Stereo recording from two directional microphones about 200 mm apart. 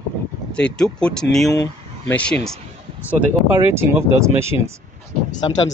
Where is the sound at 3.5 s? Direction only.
10° right (ahead or behind).